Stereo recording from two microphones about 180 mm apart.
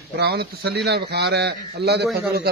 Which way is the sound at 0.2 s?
60° right (ahead or behind).